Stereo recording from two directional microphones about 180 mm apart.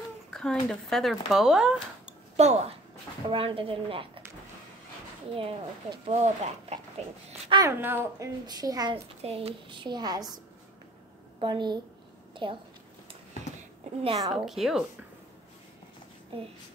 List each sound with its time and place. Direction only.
0.3 s speech: 5° left (ahead or behind)
2.3 s a child's voice: 35° right (ahead or behind)
5.3 s a woman's voice: 30° right (ahead or behind)
7.6 s a child's voice: 10° right (ahead or behind)
9.2 s a child's voice: 35° right (ahead or behind)
14.0 s a child's voice: 25° right (ahead or behind)
14.3 s speech: centre (ahead or behind)